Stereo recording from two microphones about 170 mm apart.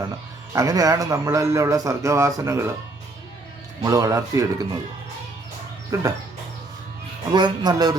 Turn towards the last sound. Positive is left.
turn(degrees=-25)  # may be behind; listen again after turning